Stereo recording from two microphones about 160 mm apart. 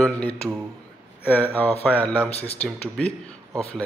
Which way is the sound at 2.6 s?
5° left (ahead or behind).